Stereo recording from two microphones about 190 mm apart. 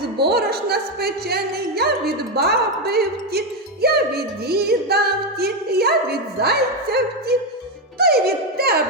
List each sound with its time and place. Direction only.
0.2 s speech: 55° right (ahead or behind)